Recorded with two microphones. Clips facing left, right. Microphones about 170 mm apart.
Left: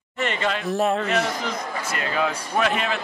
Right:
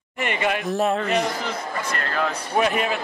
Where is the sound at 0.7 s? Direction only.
Centre (ahead or behind).